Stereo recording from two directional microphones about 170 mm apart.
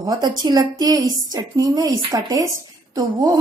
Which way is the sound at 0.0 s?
20° right (ahead or behind).